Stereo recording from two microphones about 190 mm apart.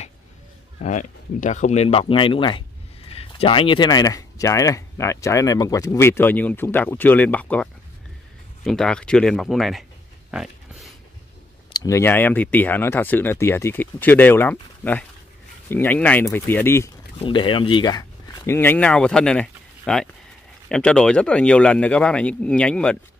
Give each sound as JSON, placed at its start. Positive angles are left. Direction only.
{"t": 0.8, "sound": "speech", "side_deg": 40}
{"t": 10.3, "sound": "a sound", "side_deg": -5}
{"t": 11.7, "sound": "speech", "side_deg": 15}
{"t": 17.2, "sound": "speech", "side_deg": 25}